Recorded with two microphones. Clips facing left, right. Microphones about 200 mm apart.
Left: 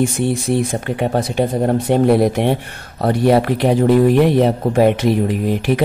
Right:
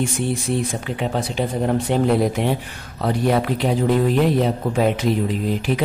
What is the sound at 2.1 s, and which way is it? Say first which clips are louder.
Speech: left 4 dB; 65° left (ahead or behind).